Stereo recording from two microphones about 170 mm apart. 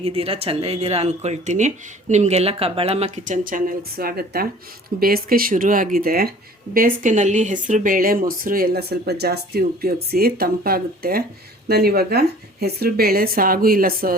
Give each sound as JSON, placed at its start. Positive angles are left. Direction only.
{"t": 0.0, "sound": "speech", "side_deg": -35}